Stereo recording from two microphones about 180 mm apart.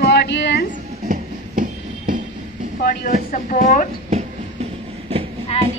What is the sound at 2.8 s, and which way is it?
Vehicle, 55° left (ahead or behind).